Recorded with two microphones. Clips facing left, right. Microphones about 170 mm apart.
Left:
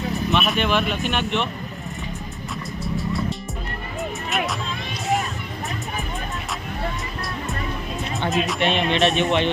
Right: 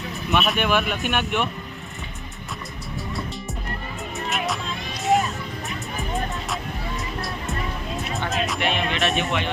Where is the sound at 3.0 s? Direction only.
Centre (ahead or behind).